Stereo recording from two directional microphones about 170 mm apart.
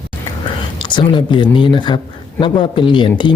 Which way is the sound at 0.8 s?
25° left (ahead or behind).